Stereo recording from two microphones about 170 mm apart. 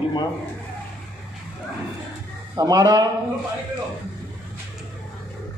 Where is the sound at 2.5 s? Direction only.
20° right (ahead or behind).